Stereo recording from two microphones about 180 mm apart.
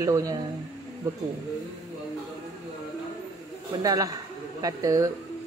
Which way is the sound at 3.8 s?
20° right (ahead or behind).